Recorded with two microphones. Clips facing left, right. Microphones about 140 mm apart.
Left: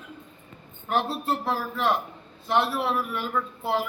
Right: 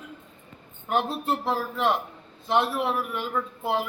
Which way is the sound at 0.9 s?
20° right (ahead or behind).